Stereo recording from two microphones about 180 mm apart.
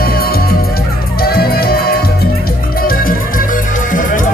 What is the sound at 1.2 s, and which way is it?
Music, 60° left (ahead or behind).